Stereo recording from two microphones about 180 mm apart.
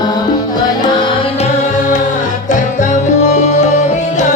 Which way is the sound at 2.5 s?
45° left (ahead or behind).